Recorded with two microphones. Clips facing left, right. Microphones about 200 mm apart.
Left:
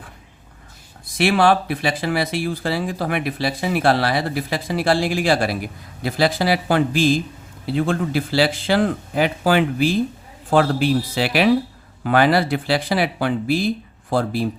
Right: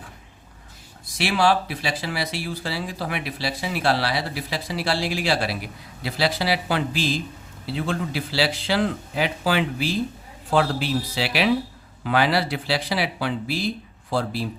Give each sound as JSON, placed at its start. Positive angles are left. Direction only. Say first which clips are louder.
{"t": 1.0, "sound": "speech", "louder": "left 5 dB", "side_deg": 55}